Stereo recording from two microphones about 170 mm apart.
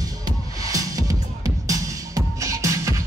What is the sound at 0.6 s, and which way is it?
Music, 20° right (ahead or behind).